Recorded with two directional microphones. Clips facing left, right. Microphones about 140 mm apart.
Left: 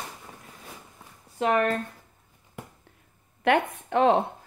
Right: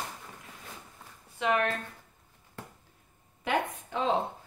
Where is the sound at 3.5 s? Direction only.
65° left (ahead or behind).